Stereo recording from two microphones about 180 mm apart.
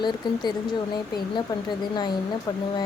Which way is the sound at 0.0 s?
25° left (ahead or behind).